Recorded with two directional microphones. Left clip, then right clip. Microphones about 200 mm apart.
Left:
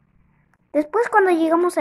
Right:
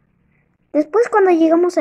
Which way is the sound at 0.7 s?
5° left (ahead or behind).